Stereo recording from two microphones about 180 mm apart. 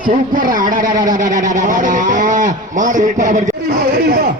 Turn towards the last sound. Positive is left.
turn(degrees=-55)  # may be behind; listen again after turning